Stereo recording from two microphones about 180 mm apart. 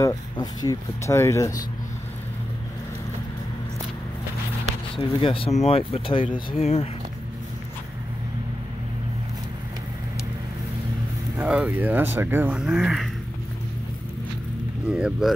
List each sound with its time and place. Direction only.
0.0 s speech: 20° left (ahead or behind)
4.9 s speech: 30° left (ahead or behind)
11.3 s speech: 5° right (ahead or behind)
14.9 s speech: 5° right (ahead or behind)